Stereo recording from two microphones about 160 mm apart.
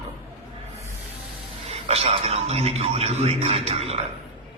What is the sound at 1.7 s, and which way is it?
A man's voice, 40° right (ahead or behind).